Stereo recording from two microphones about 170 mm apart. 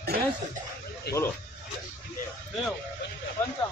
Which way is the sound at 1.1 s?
70° left (ahead or behind).